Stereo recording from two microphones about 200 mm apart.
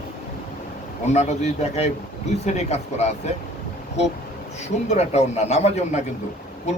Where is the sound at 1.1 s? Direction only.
30° left (ahead or behind).